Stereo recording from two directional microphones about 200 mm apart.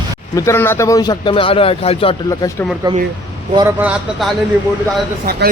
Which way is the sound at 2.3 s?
15° left (ahead or behind).